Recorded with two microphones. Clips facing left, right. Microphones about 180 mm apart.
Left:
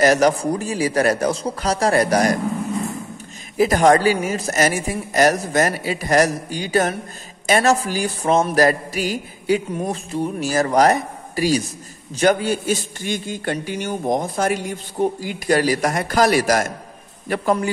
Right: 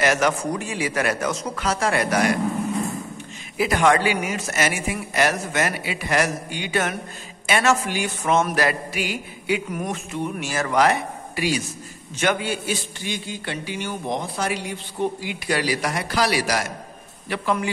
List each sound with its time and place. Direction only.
0.0 s a man's voice: 35° left (ahead or behind)
3.5 s a man's voice: 40° left (ahead or behind)